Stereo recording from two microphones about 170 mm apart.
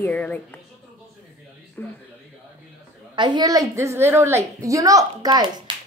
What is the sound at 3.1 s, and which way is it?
A woman's voice, 25° right (ahead or behind).